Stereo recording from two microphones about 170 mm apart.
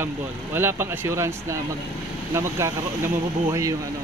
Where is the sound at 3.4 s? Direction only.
20° right (ahead or behind).